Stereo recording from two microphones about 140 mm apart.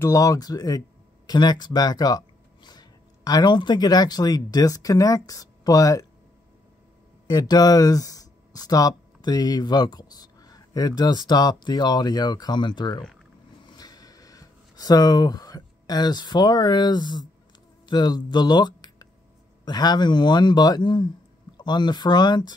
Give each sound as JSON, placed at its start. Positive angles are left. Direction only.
{"t": 0.0, "sound": "speech", "side_deg": 25}
{"t": 7.2, "sound": "speech", "side_deg": 30}
{"t": 13.7, "sound": "a sound", "side_deg": 25}
{"t": 17.8, "sound": "speech", "side_deg": 30}